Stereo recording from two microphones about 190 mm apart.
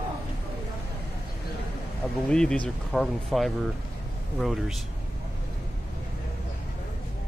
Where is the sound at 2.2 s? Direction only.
5° left (ahead or behind).